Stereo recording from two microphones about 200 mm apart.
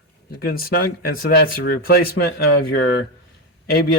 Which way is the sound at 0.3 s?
50° left (ahead or behind).